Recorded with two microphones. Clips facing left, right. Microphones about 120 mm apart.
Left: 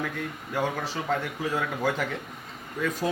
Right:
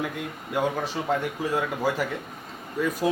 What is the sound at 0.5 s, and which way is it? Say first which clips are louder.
A man's voice: right 3 dB; 15° right (ahead or behind).